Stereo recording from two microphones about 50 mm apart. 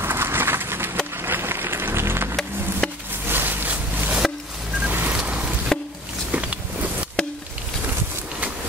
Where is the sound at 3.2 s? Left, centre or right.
Right.